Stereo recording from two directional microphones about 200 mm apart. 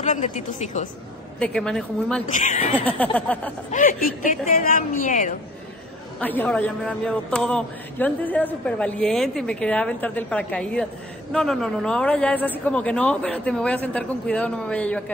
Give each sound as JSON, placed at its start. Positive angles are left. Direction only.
{"t": 0.0, "sound": "a woman's voice", "side_deg": 35}
{"t": 1.4, "sound": "a man's voice", "side_deg": 5}
{"t": 2.2, "sound": "a woman's voice", "side_deg": 40}
{"t": 2.8, "sound": "speech", "side_deg": 5}
{"t": 3.7, "sound": "a woman's voice", "side_deg": 40}
{"t": 6.1, "sound": "a man's voice", "side_deg": 10}